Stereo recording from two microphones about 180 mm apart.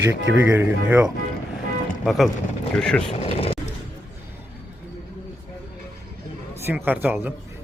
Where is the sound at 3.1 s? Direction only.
35° left (ahead or behind).